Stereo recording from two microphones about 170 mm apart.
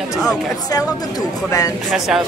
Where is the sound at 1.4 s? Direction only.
20° left (ahead or behind).